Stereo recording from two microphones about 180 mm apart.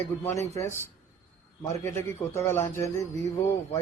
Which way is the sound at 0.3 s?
15° left (ahead or behind).